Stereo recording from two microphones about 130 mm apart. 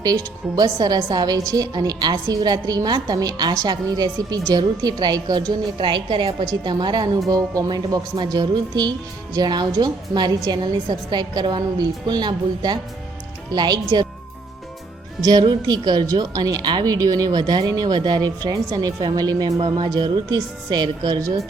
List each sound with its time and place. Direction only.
0.0 s a woman's voice: 30° right (ahead or behind)
15.2 s speech: 30° right (ahead or behind)